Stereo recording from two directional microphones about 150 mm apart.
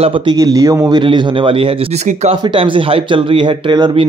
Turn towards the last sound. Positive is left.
turn(degrees=-30)  # may be behind; listen again after turning